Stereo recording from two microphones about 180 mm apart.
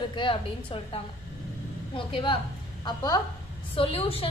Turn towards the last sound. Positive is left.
turn(degrees=30)  # may be behind; listen again after turning